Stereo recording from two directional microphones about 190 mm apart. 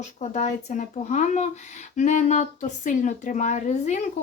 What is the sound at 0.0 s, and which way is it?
Speech, 35° left (ahead or behind).